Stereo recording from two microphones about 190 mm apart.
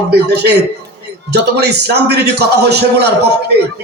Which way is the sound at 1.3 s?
60° right (ahead or behind).